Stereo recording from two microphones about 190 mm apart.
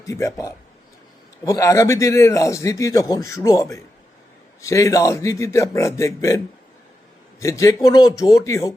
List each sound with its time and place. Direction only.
0.0 s speech: 15° left (ahead or behind)